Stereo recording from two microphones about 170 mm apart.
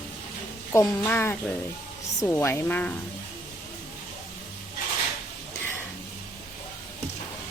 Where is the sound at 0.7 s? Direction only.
15° left (ahead or behind).